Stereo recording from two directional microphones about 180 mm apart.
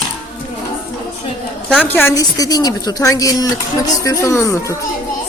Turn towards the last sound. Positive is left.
turn(degrees=15)  # may be behind; listen again after turning